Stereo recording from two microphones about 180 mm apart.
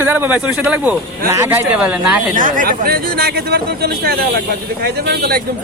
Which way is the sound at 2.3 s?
45° right (ahead or behind).